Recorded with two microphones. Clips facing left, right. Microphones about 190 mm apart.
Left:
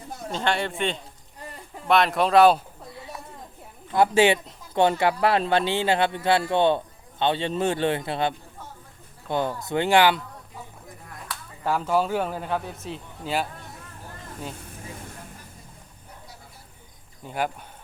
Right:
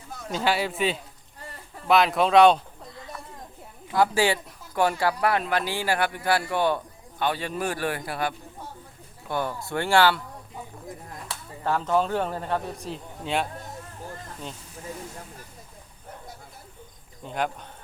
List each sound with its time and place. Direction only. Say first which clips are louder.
0.3 s a man's voice: right 1 dB; 5° right (ahead or behind)
3.9 s speech: left 3 dB; 20° left (ahead or behind)
11.3 s a sound: left 3 dB; 25° right (ahead or behind)
11.6 s a man's voice: even; 10° left (ahead or behind)
17.2 s speech: left 1 dB; 5° left (ahead or behind)